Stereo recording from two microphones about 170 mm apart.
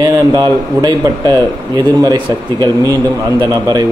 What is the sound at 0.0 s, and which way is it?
Speech, 20° right (ahead or behind).